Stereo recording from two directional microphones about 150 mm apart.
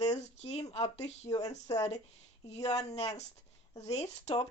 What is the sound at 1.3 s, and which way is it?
Speech, 25° left (ahead or behind).